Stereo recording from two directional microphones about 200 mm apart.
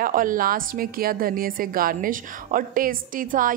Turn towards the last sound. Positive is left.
turn(degrees=-45)  # may be behind; listen again after turning